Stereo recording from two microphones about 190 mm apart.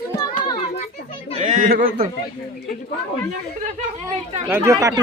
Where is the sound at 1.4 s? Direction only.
45° right (ahead or behind).